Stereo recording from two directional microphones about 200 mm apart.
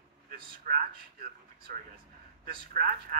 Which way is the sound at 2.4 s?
45° right (ahead or behind).